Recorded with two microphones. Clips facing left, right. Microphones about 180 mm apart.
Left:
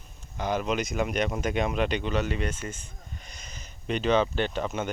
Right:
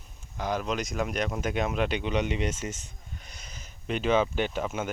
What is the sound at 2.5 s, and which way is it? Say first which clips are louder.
Speech: right 1 dB; 90° right.